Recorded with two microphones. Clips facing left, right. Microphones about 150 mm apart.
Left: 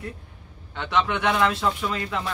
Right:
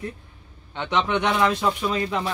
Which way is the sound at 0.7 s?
20° right (ahead or behind).